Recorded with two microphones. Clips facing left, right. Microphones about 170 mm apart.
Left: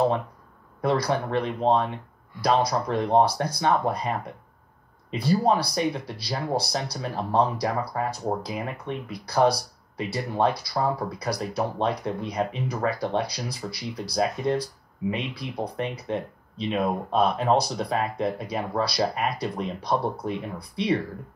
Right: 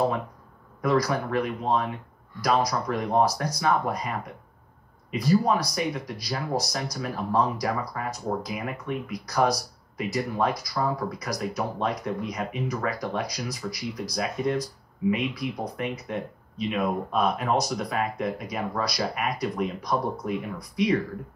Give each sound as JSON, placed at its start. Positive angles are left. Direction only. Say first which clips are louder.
{"t": 0.8, "sound": "speech", "louder": "even", "side_deg": 30}
{"t": 5.1, "sound": "speech", "louder": "even", "side_deg": 30}